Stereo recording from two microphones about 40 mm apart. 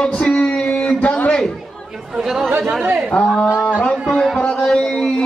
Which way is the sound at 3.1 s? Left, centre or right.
Left.